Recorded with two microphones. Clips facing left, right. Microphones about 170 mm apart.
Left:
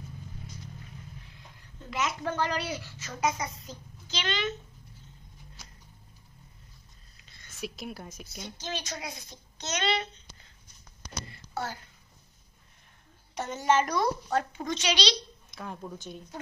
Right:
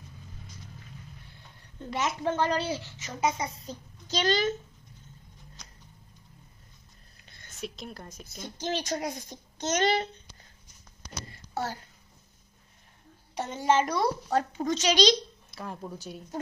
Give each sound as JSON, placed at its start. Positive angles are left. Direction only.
{"t": 1.9, "sound": "a child's voice", "side_deg": -30}
{"t": 7.2, "sound": "a sound", "side_deg": -50}
{"t": 7.5, "sound": "a woman's voice", "side_deg": 5}
{"t": 8.4, "sound": "a woman's voice", "side_deg": -50}
{"t": 11.2, "sound": "a sound", "side_deg": -40}
{"t": 13.3, "sound": "a woman's voice", "side_deg": -30}
{"t": 15.5, "sound": "speech", "side_deg": 0}